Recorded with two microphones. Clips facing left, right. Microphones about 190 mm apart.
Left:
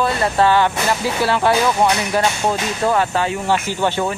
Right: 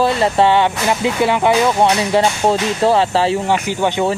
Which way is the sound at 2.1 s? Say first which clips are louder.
Right 4 dB; 30° right (ahead or behind).